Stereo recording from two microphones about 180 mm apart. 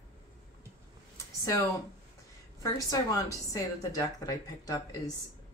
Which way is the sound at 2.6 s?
20° left (ahead or behind).